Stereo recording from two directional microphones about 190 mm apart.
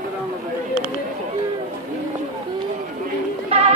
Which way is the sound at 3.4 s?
35° right (ahead or behind).